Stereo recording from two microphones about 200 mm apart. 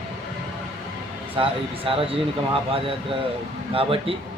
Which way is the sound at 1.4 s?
25° right (ahead or behind).